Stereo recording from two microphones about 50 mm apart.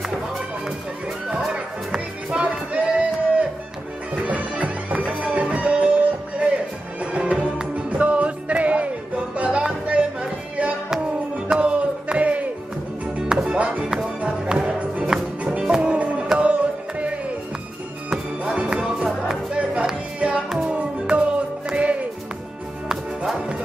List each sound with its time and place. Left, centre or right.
1.5 s music: centre
18.1 s music: right
20.4 s music: centre
20.7 s music: right